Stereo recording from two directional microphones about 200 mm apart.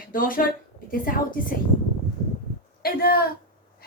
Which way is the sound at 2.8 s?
50° left (ahead or behind).